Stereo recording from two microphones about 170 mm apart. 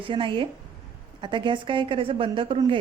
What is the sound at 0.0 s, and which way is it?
A woman's voice, 30° right (ahead or behind).